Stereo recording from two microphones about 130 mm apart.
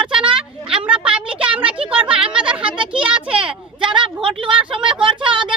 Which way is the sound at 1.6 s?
45° right (ahead or behind).